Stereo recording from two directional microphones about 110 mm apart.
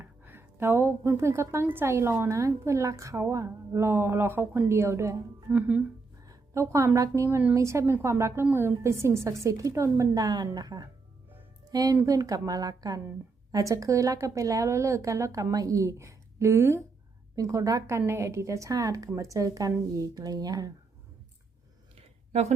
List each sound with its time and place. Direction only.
0.0 s a woman's voice: 20° right (ahead or behind)
5.5 s speech: 10° right (ahead or behind)
6.2 s a woman's voice: 25° right (ahead or behind)
22.3 s a woman's voice: 90° right